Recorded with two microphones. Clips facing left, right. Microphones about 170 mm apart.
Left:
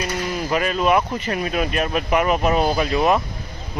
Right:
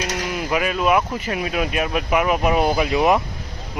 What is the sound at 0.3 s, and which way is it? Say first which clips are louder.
Speech: even; 5° right (ahead or behind).